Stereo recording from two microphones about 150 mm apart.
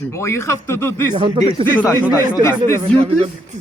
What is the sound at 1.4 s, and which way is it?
Speech, 35° right (ahead or behind).